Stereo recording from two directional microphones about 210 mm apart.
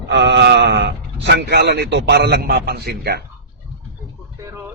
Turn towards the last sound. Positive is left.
turn(degrees=-50)  # may be behind; listen again after turning